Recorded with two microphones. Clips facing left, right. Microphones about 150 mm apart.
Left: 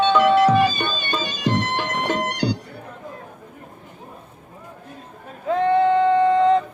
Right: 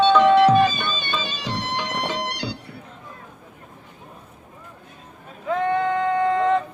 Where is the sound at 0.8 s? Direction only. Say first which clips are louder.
Left 2 dB; 45° left (ahead or behind).